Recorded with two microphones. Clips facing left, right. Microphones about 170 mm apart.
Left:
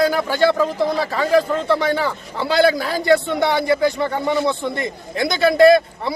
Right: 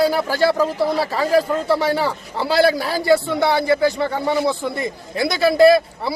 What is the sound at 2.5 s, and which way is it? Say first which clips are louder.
Speech: even; 35° right (ahead or behind).